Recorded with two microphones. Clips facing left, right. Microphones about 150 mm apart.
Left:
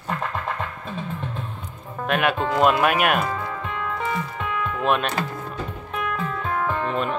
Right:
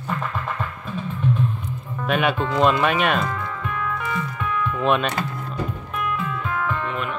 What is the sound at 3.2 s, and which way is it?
Music, 25° left (ahead or behind).